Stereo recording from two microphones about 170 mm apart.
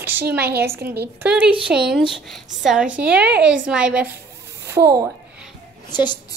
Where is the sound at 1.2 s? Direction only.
10° right (ahead or behind).